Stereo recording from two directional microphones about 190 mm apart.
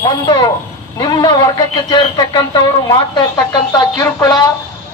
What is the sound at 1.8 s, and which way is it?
A man's voice, 25° left (ahead or behind).